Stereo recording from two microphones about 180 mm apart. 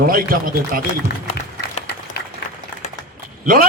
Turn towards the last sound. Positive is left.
turn(degrees=-55)  # may be behind; listen again after turning